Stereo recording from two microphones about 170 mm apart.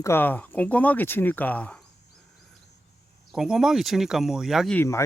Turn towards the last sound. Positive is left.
turn(degrees=15)  # may be behind; listen again after turning